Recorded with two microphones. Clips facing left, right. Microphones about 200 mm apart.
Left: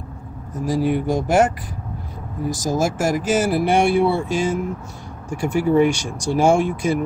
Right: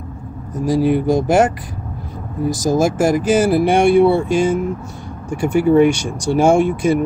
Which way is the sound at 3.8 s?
55° right (ahead or behind).